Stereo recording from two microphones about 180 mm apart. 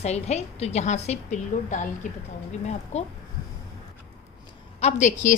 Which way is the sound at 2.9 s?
40° left (ahead or behind).